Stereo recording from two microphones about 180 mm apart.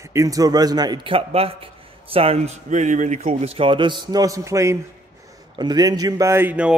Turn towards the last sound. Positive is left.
turn(degrees=-10)  # may be behind; listen again after turning